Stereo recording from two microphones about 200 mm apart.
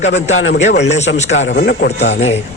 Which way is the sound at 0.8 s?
35° left (ahead or behind).